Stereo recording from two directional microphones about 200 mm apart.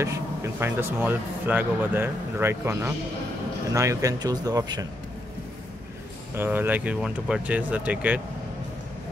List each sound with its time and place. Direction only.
0.0 s speech: 15° right (ahead or behind)
6.3 s speech: 10° right (ahead or behind)